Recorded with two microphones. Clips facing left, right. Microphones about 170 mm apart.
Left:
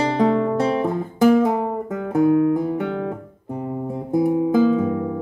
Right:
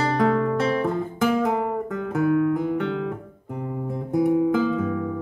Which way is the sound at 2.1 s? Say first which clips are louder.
Left 4 dB; 30° left (ahead or behind).